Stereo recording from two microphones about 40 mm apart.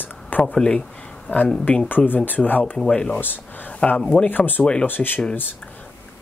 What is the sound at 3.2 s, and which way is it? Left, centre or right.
Speech, left.